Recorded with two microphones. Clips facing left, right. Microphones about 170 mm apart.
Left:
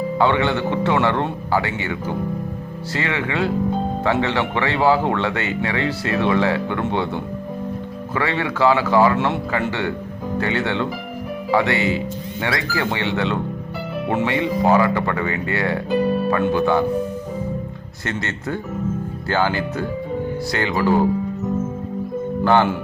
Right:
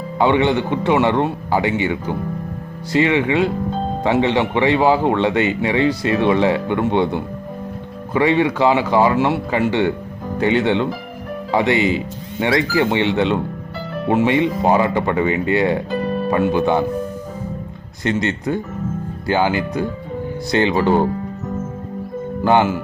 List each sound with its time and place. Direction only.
0.2 s speech: 15° right (ahead or behind)
9.1 s speech: 10° right (ahead or behind)
9.5 s speech: 20° right (ahead or behind)
18.0 s speech: 20° right (ahead or behind)
22.4 s speech: 10° right (ahead or behind)